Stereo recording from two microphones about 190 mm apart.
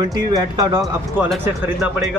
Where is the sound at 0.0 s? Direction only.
20° right (ahead or behind).